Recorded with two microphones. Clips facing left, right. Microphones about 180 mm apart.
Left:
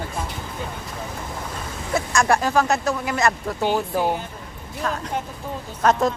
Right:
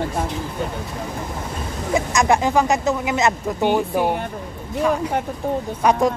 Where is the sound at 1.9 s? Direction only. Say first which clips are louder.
Right 2 dB; 20° right (ahead or behind).